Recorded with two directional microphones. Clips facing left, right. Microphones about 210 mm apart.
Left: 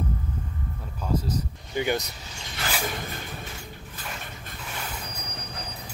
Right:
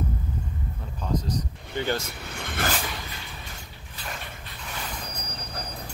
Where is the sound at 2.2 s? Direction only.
55° right (ahead or behind).